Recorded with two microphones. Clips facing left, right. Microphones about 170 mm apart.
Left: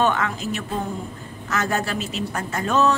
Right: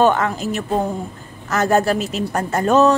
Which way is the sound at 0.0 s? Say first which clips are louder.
Right 6 dB; 40° right (ahead or behind).